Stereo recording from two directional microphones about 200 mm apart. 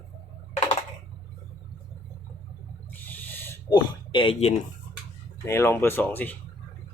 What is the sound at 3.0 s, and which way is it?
Owl, 10° left (ahead or behind).